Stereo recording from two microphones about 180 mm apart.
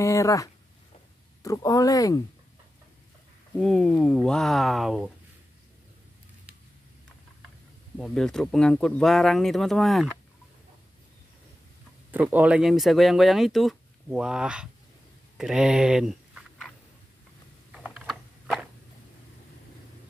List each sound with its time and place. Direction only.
0.0 s speech: 15° left (ahead or behind)
3.5 s speech: 5° left (ahead or behind)
8.0 s speech: 5° left (ahead or behind)
12.1 s speech: 10° right (ahead or behind)
15.3 s a sound: centre (ahead or behind)
17.8 s a sound: centre (ahead or behind)